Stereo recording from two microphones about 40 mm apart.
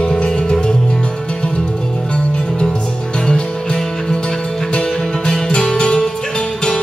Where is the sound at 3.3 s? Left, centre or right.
Centre.